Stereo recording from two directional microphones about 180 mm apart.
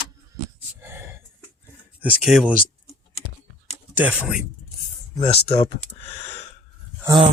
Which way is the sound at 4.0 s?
10° right (ahead or behind).